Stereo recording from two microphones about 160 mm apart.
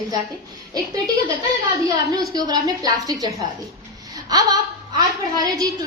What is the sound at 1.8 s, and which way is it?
A woman's voice, 20° right (ahead or behind).